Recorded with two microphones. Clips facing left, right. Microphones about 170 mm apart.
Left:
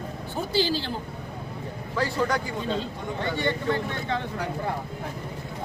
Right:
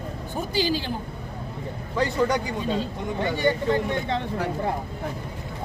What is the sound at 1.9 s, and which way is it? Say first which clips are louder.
Speech: right 3 dB; 20° right (ahead or behind).